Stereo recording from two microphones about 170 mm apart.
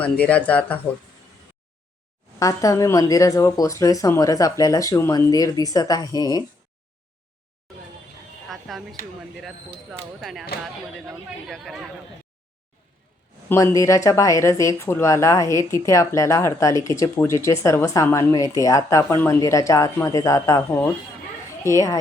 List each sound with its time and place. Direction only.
0.0 s speech: 10° left (ahead or behind)
2.4 s speech: 20° left (ahead or behind)
8.4 s a sound: centre (ahead or behind)
10.2 s speech: centre (ahead or behind)
11.4 s speech: centre (ahead or behind)
13.5 s speech: 15° left (ahead or behind)